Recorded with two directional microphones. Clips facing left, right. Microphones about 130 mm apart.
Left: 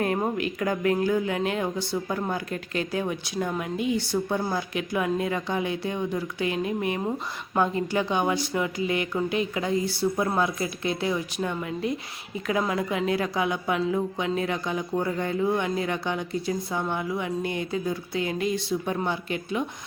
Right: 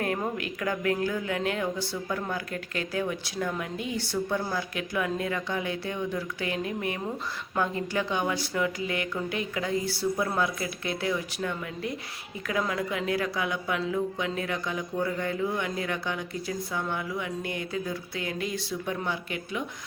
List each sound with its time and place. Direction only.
0.0 s a woman's voice: 25° left (ahead or behind)